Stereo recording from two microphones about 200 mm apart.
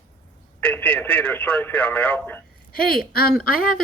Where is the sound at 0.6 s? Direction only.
10° left (ahead or behind).